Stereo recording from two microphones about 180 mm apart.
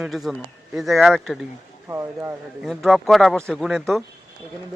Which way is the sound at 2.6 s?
Centre (ahead or behind).